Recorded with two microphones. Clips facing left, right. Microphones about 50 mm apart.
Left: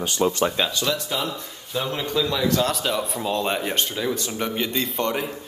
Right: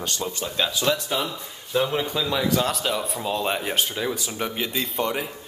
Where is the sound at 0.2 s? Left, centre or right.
Left.